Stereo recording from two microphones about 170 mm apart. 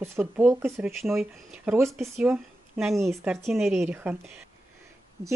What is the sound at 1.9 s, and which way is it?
Speech, centre (ahead or behind).